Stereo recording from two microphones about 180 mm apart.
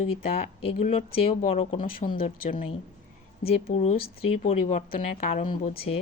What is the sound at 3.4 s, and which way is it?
Speech, 35° left (ahead or behind).